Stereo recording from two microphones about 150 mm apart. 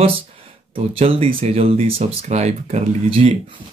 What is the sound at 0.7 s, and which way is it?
Speech, 40° right (ahead or behind).